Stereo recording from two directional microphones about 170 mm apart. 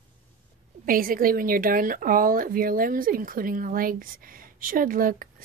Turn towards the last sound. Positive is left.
turn(degrees=-55)  # may be behind; listen again after turning